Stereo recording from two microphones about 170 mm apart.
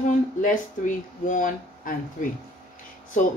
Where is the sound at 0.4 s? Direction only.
50° left (ahead or behind).